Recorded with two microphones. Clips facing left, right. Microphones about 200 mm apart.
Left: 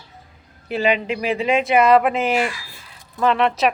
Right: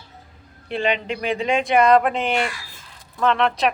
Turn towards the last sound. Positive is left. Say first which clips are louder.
# left 2 dB
turn(degrees=5)  # may be behind; listen again after turning